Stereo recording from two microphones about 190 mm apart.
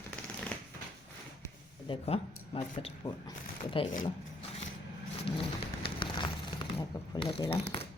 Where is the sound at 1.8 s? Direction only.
30° left (ahead or behind).